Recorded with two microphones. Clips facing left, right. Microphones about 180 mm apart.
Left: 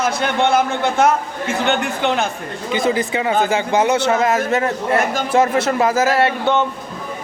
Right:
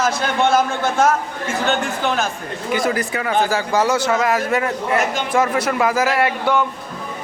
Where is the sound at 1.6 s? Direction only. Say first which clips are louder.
Left 1 dB; 20° left (ahead or behind).